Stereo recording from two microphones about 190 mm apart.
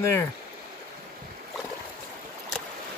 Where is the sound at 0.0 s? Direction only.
15° left (ahead or behind).